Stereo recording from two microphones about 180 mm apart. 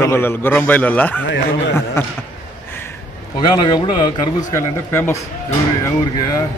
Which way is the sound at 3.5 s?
25° left (ahead or behind).